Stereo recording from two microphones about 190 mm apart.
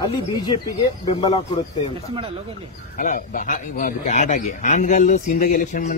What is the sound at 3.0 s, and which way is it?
Speech, 45° left (ahead or behind).